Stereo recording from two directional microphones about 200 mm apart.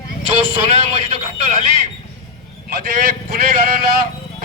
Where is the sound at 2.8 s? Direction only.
45° right (ahead or behind).